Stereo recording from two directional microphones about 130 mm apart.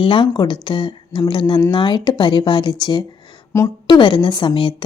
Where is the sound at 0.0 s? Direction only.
40° left (ahead or behind).